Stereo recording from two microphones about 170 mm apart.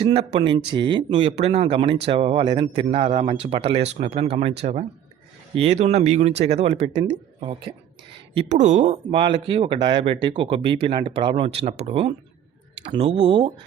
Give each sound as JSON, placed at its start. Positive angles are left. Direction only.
{"t": 0.0, "sound": "speech", "side_deg": -35}
{"t": 1.2, "sound": "speech", "side_deg": -40}
{"t": 8.4, "sound": "speech", "side_deg": -45}